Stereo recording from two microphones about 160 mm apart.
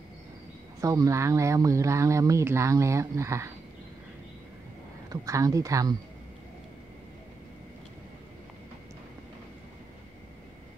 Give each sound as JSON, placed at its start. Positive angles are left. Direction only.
{"t": 0.7, "sound": "speech", "side_deg": -20}
{"t": 5.1, "sound": "speech", "side_deg": -20}